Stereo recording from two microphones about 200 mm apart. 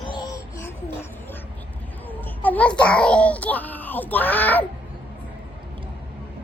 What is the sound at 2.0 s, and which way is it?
A child's voice, 10° left (ahead or behind).